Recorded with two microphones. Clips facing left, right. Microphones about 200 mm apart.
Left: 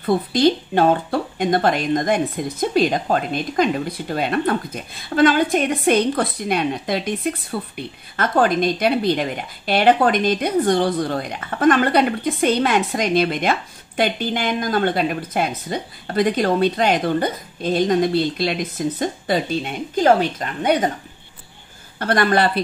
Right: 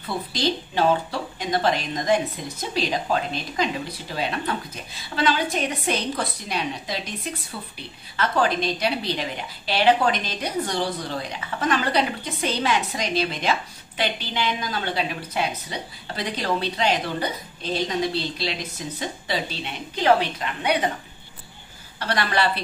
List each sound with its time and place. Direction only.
0.0 s speech: 55° left (ahead or behind)
21.9 s a woman's voice: 50° left (ahead or behind)